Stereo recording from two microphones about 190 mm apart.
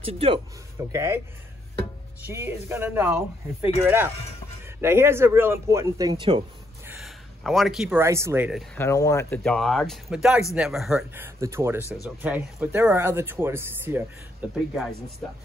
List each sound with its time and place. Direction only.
0.0 s a man's voice: 30° right (ahead or behind)
0.9 s speech: 15° right (ahead or behind)
2.2 s speech: 15° right (ahead or behind)
6.9 s a sound: centre (ahead or behind)
8.0 s speech: 15° right (ahead or behind)
8.7 s speech: 15° left (ahead or behind); by 14.0 s 10° right (ahead or behind)
14.5 s speech: centre (ahead or behind)